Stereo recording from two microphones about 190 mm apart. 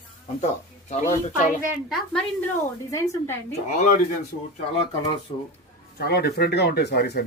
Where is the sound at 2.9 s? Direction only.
10° left (ahead or behind).